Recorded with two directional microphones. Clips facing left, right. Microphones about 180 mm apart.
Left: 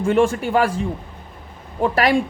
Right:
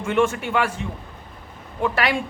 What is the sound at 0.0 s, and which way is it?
A man's voice, 35° left (ahead or behind).